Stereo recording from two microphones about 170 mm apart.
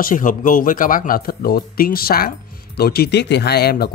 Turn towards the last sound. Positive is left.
turn(degrees=65)  # may be behind; listen again after turning